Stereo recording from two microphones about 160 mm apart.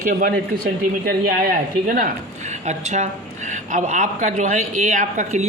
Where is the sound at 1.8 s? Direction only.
65° right (ahead or behind).